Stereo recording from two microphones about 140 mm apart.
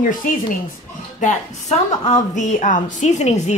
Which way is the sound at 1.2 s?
55° left (ahead or behind).